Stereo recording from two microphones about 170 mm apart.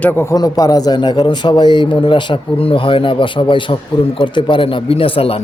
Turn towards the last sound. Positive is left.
turn(degrees=35)  # may be behind; listen again after turning